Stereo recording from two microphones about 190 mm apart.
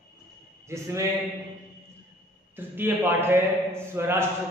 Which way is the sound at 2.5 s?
10° right (ahead or behind).